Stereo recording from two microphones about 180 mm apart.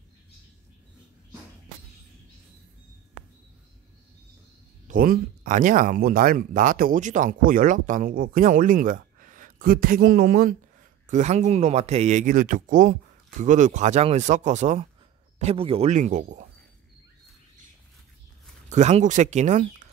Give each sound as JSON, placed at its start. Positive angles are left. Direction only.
{"t": 4.8, "sound": "speech", "side_deg": -50}
{"t": 11.1, "sound": "speech", "side_deg": -40}
{"t": 18.7, "sound": "speech", "side_deg": -40}